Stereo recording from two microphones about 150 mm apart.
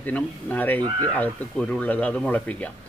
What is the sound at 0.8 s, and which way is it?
Speech, 30° right (ahead or behind).